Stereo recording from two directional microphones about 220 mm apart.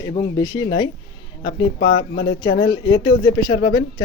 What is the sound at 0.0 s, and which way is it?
Speech, 20° left (ahead or behind).